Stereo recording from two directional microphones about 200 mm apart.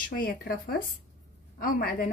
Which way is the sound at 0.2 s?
45° left (ahead or behind).